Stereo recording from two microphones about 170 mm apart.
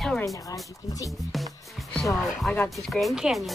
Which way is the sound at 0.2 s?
20° left (ahead or behind).